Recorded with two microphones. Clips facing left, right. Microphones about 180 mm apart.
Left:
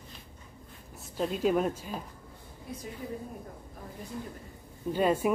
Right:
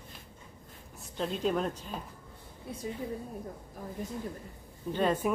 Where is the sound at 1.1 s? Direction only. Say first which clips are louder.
Left 3 dB; 5° left (ahead or behind).